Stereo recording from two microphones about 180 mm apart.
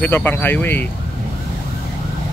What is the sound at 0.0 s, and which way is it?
Speech, 10° left (ahead or behind).